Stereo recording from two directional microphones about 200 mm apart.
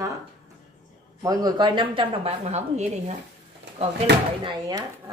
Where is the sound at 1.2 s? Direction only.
20° right (ahead or behind); by 3.1 s 35° right (ahead or behind).